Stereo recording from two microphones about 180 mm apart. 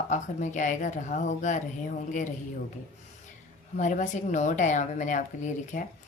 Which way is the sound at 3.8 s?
45° left (ahead or behind).